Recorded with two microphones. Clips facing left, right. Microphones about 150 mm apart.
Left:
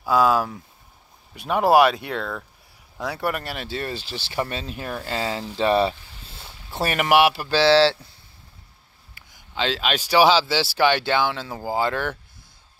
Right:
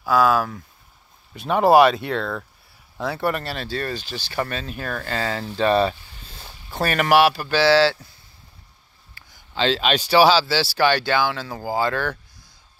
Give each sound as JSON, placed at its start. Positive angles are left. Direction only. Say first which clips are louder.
{"t": 0.0, "sound": "speech", "louder": "right 1 dB", "side_deg": 25}
{"t": 1.3, "sound": "speech", "louder": "right 2 dB", "side_deg": 10}
{"t": 9.1, "sound": "a sound", "louder": "right 1 dB", "side_deg": 20}
{"t": 9.7, "sound": "speech", "louder": "right 4 dB", "side_deg": 10}